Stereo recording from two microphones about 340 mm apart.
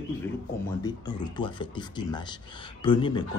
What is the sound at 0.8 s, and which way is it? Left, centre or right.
A man's voice, centre.